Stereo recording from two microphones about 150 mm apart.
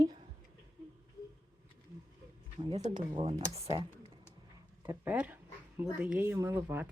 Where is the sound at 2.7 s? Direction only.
50° right (ahead or behind).